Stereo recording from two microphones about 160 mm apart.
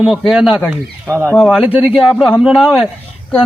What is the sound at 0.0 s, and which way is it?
Speech, centre (ahead or behind).